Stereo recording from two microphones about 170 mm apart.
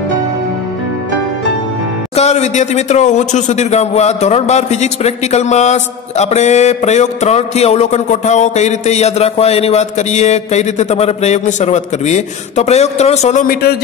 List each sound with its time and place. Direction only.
2.1 s speech: 40° left (ahead or behind); by 13.7 s 60° left (ahead or behind)